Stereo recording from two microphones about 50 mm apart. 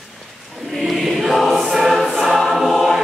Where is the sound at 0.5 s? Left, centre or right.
Centre.